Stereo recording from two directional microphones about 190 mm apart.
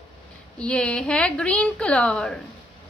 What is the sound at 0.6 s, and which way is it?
A woman's voice, 5° left (ahead or behind).